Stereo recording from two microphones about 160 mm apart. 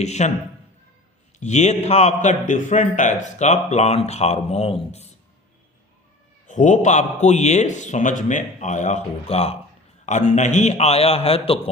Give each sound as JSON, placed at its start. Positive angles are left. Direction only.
{"t": 0.0, "sound": "a man's voice", "side_deg": 45}
{"t": 1.4, "sound": "a man's voice", "side_deg": 45}
{"t": 6.5, "sound": "a man's voice", "side_deg": 50}